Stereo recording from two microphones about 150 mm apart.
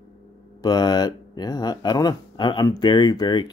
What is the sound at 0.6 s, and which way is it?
Speech, 25° left (ahead or behind).